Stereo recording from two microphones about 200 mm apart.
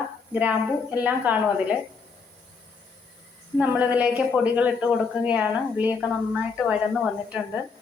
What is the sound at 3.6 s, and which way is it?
Speech, 5° right (ahead or behind).